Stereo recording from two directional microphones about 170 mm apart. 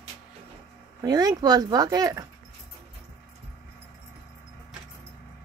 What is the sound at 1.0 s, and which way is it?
Speech, 25° right (ahead or behind).